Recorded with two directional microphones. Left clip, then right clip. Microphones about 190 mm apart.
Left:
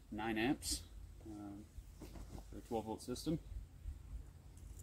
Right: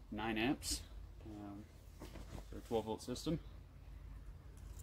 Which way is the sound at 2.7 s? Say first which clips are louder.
Right 3 dB; 30° right (ahead or behind).